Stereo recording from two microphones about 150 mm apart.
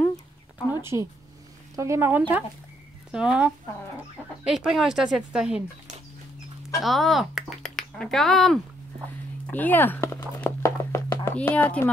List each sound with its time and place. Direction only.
0.9 s speech: 25° right (ahead or behind); by 5.6 s 5° right (ahead or behind)
6.8 s speech: centre (ahead or behind)
9.5 s a sound: 10° left (ahead or behind)